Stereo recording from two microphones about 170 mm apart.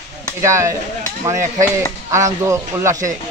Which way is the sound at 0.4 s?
15° right (ahead or behind).